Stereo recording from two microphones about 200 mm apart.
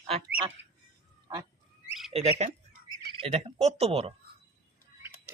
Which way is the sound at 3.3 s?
30° right (ahead or behind).